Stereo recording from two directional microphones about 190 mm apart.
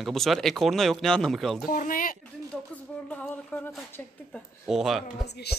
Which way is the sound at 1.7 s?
45° left (ahead or behind).